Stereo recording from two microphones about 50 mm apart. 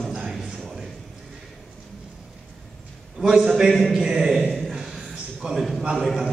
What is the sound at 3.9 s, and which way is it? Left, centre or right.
Speech, centre.